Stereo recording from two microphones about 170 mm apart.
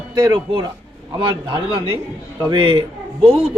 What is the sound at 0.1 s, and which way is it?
A man's voice, 25° right (ahead or behind).